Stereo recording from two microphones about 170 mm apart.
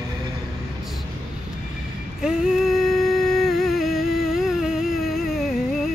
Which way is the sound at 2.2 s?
5° right (ahead or behind).